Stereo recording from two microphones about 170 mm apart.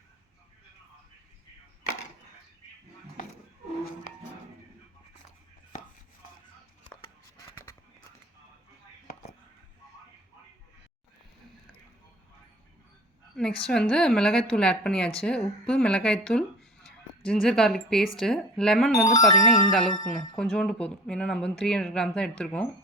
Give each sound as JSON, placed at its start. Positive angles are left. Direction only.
{"t": 7.5, "sound": "a sound", "side_deg": 15}
{"t": 13.3, "sound": "speech", "side_deg": 5}
{"t": 19.0, "sound": "speech", "side_deg": 20}
{"t": 19.4, "sound": "speech", "side_deg": 50}
{"t": 20.1, "sound": "speech", "side_deg": 5}